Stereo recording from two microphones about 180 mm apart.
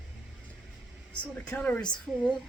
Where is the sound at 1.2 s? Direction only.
5° left (ahead or behind).